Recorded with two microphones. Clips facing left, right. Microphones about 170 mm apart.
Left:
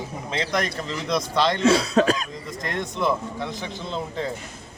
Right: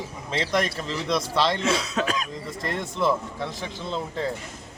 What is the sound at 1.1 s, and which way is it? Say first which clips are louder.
Speech: left 1 dB; centre (ahead or behind).